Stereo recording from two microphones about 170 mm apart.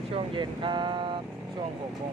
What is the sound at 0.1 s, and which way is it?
Speech, 30° right (ahead or behind).